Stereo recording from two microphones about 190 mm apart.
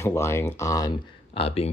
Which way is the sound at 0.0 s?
15° left (ahead or behind).